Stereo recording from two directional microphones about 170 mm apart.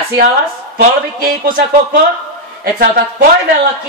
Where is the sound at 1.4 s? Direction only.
55° right (ahead or behind).